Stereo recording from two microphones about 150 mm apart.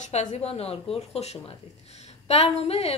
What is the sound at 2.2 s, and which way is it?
Speech, 45° left (ahead or behind).